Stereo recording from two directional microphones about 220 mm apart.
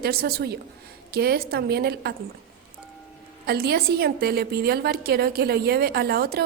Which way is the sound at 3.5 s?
45° right (ahead or behind).